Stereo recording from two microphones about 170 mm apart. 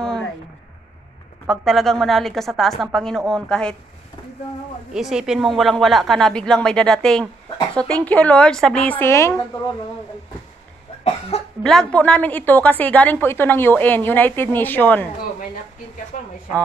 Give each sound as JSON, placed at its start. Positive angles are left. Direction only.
{"t": 1.5, "sound": "a woman's voice", "side_deg": 0}
{"t": 4.9, "sound": "a woman's voice", "side_deg": -5}
{"t": 11.1, "sound": "cough", "side_deg": 35}
{"t": 11.6, "sound": "a woman's voice", "side_deg": 5}
{"t": 16.1, "sound": "a sound", "side_deg": 50}